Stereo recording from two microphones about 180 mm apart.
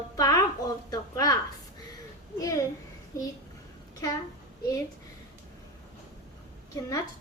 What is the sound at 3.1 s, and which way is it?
Speech, 20° left (ahead or behind).